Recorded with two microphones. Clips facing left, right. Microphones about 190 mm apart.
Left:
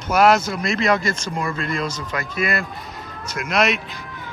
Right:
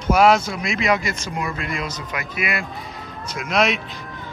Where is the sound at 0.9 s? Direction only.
15° right (ahead or behind).